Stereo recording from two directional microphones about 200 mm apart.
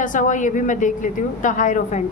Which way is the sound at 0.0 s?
40° left (ahead or behind).